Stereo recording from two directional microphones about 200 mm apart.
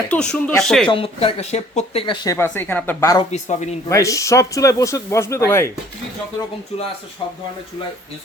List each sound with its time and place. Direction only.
0.1 s speech: 5° left (ahead or behind)
0.9 s speech: 25° left (ahead or behind)
2.2 s speech: 15° left (ahead or behind)
3.3 s speech: 35° left (ahead or behind)
3.8 s speech: 15° left (ahead or behind)